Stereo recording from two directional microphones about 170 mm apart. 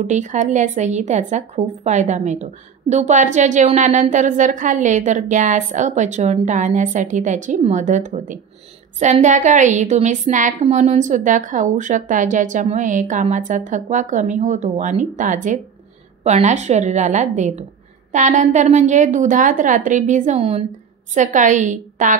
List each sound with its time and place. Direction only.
0.0 s a woman's voice: 45° right (ahead or behind)